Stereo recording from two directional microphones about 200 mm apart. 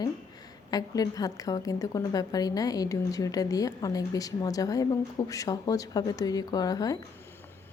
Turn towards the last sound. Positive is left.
turn(degrees=20)  # may be behind; listen again after turning